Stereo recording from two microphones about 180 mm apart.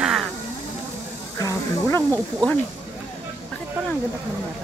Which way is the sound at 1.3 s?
15° left (ahead or behind).